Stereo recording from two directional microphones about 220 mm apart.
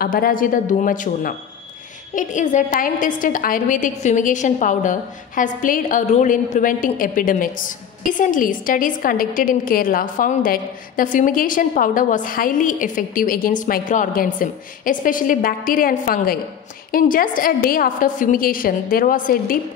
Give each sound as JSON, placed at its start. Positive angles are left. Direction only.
{"t": 0.0, "sound": "a woman's voice", "side_deg": 40}